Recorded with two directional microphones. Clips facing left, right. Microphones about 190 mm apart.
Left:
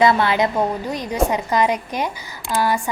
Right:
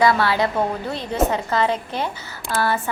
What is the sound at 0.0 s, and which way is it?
A woman's voice, 20° left (ahead or behind).